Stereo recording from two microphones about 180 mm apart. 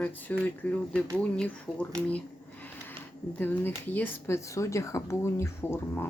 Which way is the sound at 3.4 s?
10° left (ahead or behind).